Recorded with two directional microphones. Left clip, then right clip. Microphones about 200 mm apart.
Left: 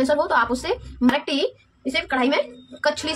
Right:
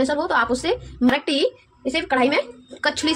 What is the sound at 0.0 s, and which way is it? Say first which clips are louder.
A woman's voice: left 1 dB; 25° right (ahead or behind).